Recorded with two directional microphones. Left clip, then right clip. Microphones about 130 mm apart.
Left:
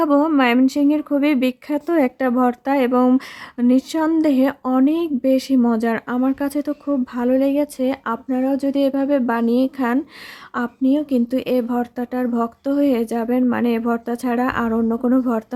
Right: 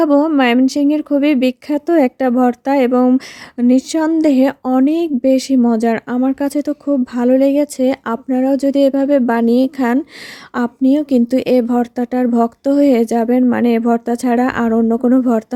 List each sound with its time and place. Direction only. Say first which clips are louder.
0.0 s speech: right 4 dB; 30° right (ahead or behind)